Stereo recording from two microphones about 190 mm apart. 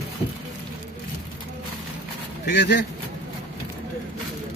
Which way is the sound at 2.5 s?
60° left (ahead or behind).